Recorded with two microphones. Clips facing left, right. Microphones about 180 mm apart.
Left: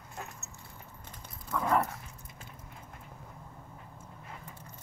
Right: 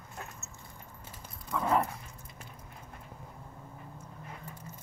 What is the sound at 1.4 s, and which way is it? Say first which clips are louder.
Dog: even; centre (ahead or behind).